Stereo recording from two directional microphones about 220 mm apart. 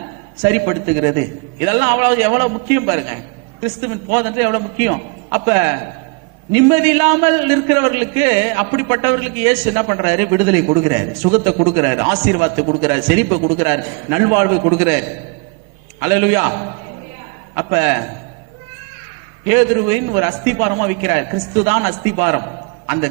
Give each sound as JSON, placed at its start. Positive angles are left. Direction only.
{"t": 0.4, "sound": "a man's voice", "side_deg": -20}
{"t": 19.5, "sound": "a man's voice", "side_deg": -20}